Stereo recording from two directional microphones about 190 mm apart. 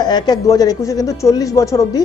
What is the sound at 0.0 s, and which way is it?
Speech, 20° left (ahead or behind).